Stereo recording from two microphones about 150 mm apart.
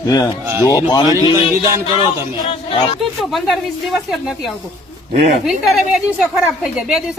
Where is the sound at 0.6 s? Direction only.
20° left (ahead or behind).